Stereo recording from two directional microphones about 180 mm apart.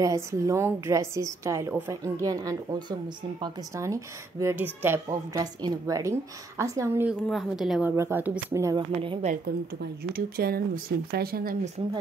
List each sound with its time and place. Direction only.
0.0 s a woman's voice: 15° right (ahead or behind)
7.2 s a woman's voice: centre (ahead or behind)
7.9 s a woman's voice: 15° right (ahead or behind)
9.0 s speech: 30° right (ahead or behind)
10.1 s speech: 55° right (ahead or behind)